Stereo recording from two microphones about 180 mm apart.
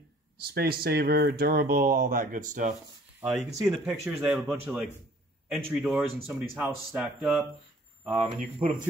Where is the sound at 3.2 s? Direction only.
5° right (ahead or behind).